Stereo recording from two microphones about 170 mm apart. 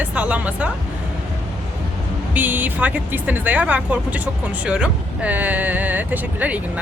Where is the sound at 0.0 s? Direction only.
5° right (ahead or behind).